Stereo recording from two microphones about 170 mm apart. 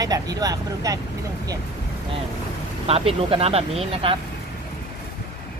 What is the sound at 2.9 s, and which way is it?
Speech, 35° right (ahead or behind).